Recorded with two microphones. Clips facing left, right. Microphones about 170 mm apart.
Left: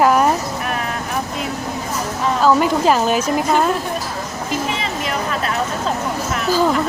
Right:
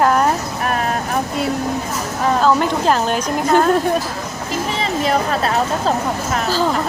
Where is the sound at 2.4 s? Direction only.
5° left (ahead or behind).